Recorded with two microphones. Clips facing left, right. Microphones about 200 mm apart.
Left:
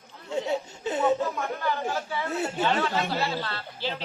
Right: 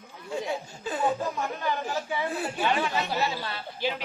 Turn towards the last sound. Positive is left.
turn(degrees=-15)  # may be behind; listen again after turning